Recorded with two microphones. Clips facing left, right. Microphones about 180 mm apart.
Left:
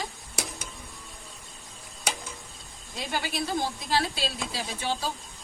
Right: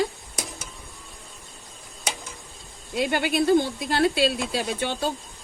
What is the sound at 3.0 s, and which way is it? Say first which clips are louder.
Speech: right 9 dB; 65° right (ahead or behind).